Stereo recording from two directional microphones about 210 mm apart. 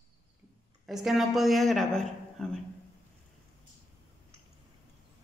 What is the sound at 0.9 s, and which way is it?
A woman's voice, centre (ahead or behind).